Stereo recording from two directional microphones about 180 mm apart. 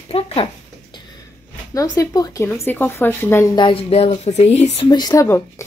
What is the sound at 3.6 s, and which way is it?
Speech, 30° left (ahead or behind).